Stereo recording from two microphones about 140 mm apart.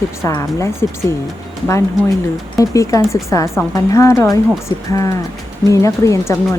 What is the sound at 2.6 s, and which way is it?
Speech, 25° left (ahead or behind).